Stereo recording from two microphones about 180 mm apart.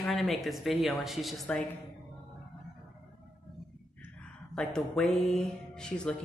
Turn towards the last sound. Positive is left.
turn(degrees=5)  # may be behind; listen again after turning